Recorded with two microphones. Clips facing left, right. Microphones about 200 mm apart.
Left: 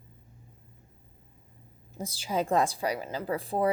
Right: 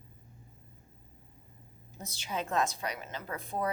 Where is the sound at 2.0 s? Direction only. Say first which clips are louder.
Left 7 dB; 30° left (ahead or behind).